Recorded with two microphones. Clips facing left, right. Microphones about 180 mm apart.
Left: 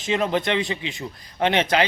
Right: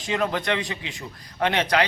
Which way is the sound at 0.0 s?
25° left (ahead or behind).